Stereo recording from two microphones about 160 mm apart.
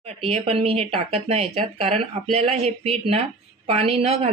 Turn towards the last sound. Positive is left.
turn(degrees=-40)  # may be behind; listen again after turning